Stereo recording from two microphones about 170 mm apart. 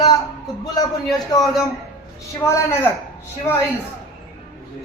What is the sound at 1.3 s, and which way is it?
A man's voice, 25° left (ahead or behind).